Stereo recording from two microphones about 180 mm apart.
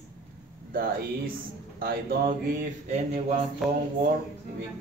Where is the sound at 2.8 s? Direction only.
40° right (ahead or behind).